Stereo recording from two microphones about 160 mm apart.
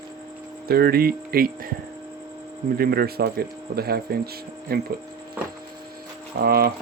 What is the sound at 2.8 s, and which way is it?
Speech, 75° right (ahead or behind).